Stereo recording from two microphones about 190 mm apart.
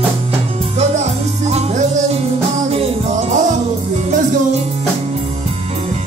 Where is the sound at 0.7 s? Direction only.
35° right (ahead or behind).